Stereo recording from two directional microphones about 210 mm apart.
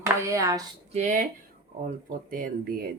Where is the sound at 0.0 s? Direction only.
15° right (ahead or behind).